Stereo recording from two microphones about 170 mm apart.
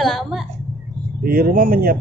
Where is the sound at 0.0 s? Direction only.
Centre (ahead or behind).